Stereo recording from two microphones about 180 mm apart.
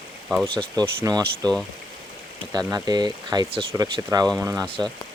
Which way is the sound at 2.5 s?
20° right (ahead or behind).